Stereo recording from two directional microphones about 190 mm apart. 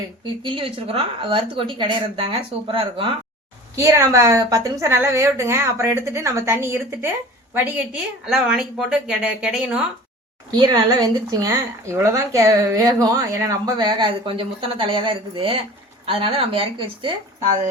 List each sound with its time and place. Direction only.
0.4 s speech: 30° right (ahead or behind)
3.8 s a woman's voice: 15° right (ahead or behind)
8.2 s speech: 5° right (ahead or behind)
10.5 s speech: 20° right (ahead or behind)